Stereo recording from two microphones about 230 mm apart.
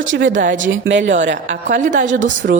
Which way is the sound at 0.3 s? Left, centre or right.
Right.